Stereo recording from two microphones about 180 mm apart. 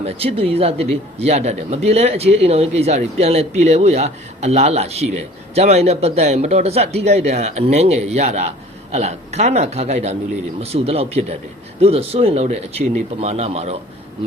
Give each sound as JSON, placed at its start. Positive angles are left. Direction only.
{"t": 0.0, "sound": "speech", "side_deg": -35}